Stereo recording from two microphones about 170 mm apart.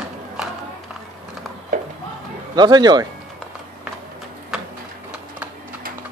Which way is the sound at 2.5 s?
25° right (ahead or behind).